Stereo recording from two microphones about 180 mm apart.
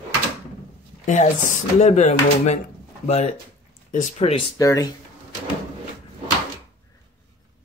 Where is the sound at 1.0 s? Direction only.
45° left (ahead or behind).